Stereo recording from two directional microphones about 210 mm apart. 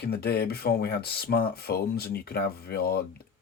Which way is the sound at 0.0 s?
50° left (ahead or behind).